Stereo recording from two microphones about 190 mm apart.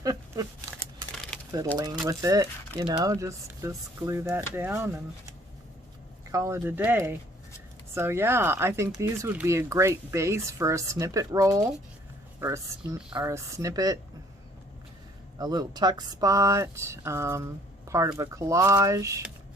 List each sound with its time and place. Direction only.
0.0 s a sound: 20° right (ahead or behind)
1.1 s shuffling cards: 5° left (ahead or behind)
2.0 s speech: 20° right (ahead or behind)
6.3 s speech: 15° right (ahead or behind)
15.4 s speech: 20° right (ahead or behind)